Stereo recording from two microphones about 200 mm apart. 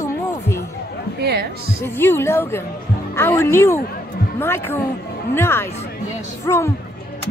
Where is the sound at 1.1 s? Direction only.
55° right (ahead or behind).